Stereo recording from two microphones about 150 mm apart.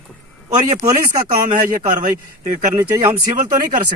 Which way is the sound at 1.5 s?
60° right (ahead or behind).